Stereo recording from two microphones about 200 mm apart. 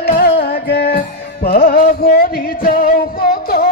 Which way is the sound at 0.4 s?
55° left (ahead or behind).